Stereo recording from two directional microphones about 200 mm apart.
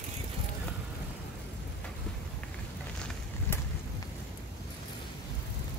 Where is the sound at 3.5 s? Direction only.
10° left (ahead or behind).